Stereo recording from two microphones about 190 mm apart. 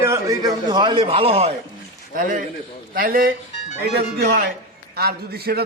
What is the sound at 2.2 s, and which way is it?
A man's voice, 45° right (ahead or behind).